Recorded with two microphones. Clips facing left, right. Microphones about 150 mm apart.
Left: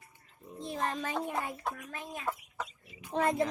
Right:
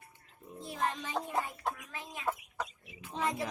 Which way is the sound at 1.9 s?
50° left (ahead or behind).